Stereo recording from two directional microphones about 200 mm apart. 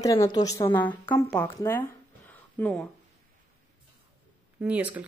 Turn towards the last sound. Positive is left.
turn(degrees=-5)  # may be behind; listen again after turning